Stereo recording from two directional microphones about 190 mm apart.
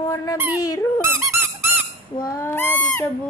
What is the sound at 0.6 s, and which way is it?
Speech, 20° left (ahead or behind).